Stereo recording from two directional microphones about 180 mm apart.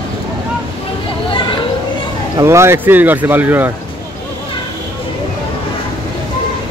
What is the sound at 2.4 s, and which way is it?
Speech, 15° right (ahead or behind).